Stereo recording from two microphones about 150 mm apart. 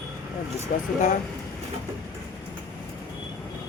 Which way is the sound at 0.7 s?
65° left (ahead or behind).